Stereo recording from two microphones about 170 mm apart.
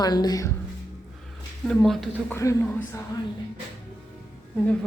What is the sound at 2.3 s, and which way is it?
Speech, 15° left (ahead or behind).